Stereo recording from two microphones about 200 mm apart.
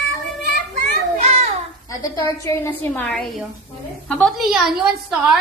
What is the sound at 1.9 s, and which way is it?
A woman's voice, 15° left (ahead or behind).